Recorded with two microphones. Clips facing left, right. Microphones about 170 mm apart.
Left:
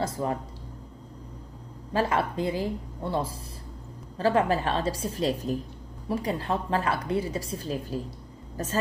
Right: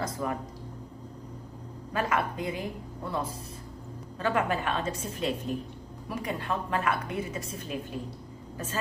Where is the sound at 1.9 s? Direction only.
30° left (ahead or behind).